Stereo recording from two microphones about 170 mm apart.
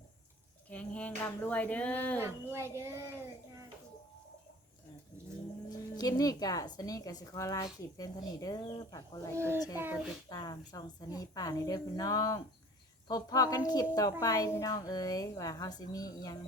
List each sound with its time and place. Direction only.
0.7 s speech: 10° left (ahead or behind)
2.2 s a child's voice: 15° right (ahead or behind)
5.7 s speech: 20° left (ahead or behind)
9.3 s a child's voice: 15° right (ahead or behind)
10.2 s speech: 25° left (ahead or behind)